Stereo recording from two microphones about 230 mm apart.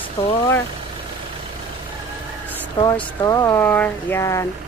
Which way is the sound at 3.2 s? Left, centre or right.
Centre.